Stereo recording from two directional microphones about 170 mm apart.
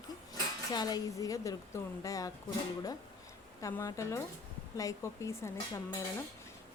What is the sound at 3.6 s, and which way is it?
Dishes, 20° left (ahead or behind).